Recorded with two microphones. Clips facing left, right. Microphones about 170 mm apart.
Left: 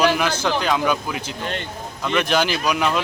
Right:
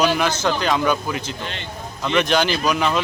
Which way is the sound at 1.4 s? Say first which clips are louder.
Left 4 dB; 45° left (ahead or behind).